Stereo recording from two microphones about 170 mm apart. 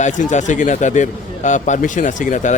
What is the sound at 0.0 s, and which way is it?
A man's voice, 45° left (ahead or behind).